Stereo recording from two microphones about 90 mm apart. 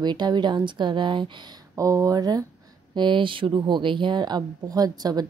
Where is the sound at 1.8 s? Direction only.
35° right (ahead or behind).